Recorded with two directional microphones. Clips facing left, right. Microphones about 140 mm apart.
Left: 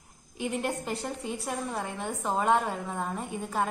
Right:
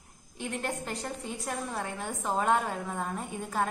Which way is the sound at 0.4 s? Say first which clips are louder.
Left 3 dB; 5° left (ahead or behind).